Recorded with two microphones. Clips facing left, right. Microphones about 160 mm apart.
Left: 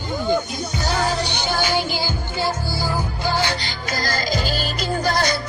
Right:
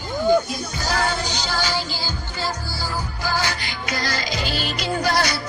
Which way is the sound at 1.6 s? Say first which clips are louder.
Left 4 dB; 20° left (ahead or behind).